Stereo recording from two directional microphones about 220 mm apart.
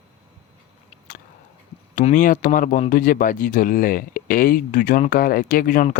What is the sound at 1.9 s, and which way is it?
Speech, 35° left (ahead or behind).